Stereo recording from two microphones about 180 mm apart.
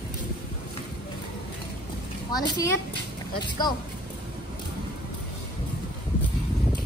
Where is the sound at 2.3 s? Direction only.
20° left (ahead or behind).